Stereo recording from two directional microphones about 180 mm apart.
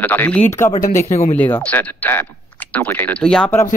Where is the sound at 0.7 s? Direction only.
45° left (ahead or behind).